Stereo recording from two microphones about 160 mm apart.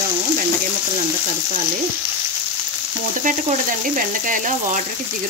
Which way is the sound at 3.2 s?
55° right (ahead or behind).